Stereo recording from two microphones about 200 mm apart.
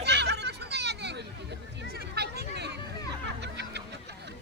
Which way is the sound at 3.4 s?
55° right (ahead or behind).